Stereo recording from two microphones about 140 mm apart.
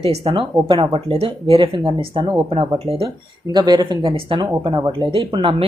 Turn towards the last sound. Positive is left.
turn(degrees=-40)  # may be behind; listen again after turning